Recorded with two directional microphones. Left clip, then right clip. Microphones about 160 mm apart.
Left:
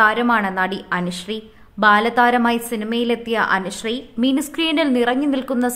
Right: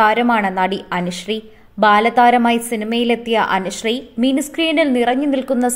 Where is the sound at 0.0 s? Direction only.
10° right (ahead or behind).